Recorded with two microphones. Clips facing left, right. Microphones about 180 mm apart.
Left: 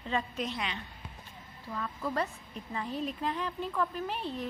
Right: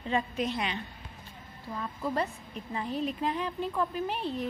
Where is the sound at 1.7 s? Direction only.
15° right (ahead or behind).